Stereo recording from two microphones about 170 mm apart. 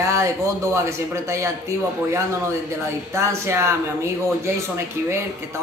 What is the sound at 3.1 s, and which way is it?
Speech, 15° right (ahead or behind).